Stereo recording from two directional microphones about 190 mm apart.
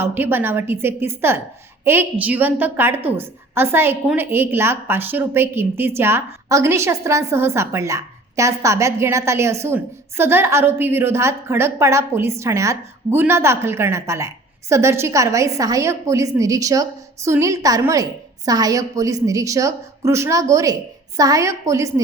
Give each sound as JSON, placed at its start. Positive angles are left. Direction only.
{"t": 0.0, "sound": "a woman's voice", "side_deg": -10}